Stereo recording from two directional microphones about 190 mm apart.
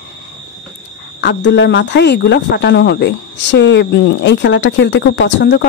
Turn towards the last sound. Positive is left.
turn(degrees=70)  # may be behind; listen again after turning